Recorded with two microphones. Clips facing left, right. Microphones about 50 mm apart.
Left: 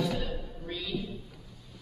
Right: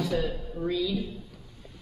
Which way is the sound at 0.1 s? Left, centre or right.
Right.